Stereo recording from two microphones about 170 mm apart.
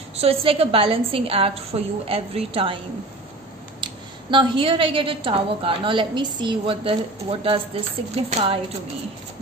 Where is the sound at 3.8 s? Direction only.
30° right (ahead or behind).